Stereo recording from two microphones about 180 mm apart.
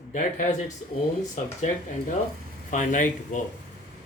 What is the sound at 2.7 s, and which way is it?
Speech, 45° left (ahead or behind).